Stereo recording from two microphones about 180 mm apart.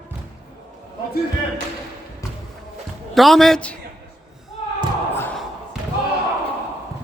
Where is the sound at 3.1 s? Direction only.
Centre (ahead or behind).